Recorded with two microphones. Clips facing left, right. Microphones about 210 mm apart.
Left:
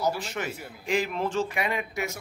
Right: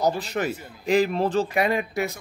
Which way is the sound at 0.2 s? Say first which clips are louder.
Right 6 dB; 35° right (ahead or behind).